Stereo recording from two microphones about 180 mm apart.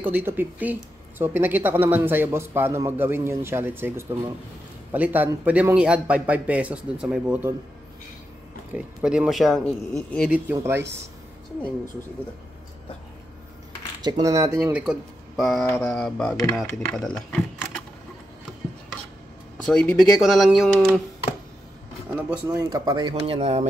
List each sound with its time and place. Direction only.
0.0 s speech: 10° right (ahead or behind)
8.7 s speech: 5° right (ahead or behind)
10.5 s speech: 15° right (ahead or behind)
14.0 s speech: 20° right (ahead or behind)
14.8 s speech: centre (ahead or behind)
19.6 s speech: 5° left (ahead or behind)
22.5 s speech: 20° right (ahead or behind); by 23.7 s 35° right (ahead or behind)